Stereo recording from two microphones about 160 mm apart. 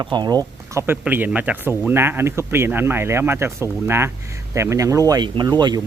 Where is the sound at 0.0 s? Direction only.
25° right (ahead or behind).